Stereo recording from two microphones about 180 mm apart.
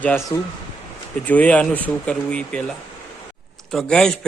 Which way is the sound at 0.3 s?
15° left (ahead or behind).